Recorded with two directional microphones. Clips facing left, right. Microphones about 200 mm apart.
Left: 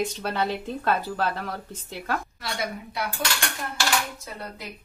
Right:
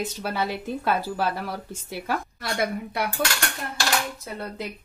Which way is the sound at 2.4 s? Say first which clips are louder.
Right 5 dB; 55° right (ahead or behind).